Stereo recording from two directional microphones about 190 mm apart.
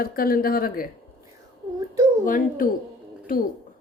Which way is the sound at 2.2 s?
45° left (ahead or behind).